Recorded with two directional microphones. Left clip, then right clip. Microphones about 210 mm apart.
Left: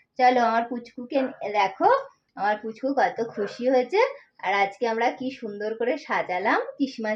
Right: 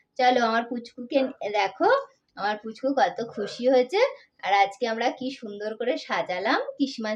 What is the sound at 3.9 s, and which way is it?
Speech, 15° right (ahead or behind).